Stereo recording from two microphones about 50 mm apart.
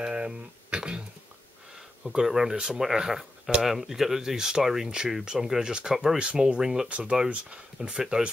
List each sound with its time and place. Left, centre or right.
0.0 s a sound: centre
2.1 s speech: centre
6.9 s speech: right